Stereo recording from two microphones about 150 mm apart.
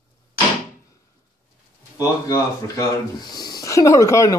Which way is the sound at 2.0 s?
25° left (ahead or behind).